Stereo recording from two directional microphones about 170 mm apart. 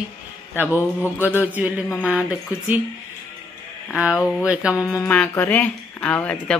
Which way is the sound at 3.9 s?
5° right (ahead or behind).